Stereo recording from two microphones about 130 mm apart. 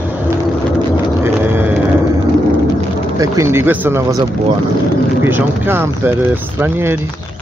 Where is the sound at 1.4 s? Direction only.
15° right (ahead or behind).